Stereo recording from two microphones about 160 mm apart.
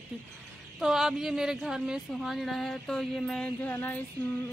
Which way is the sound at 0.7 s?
5° right (ahead or behind).